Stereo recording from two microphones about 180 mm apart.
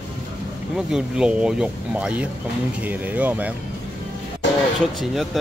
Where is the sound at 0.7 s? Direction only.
5° right (ahead or behind).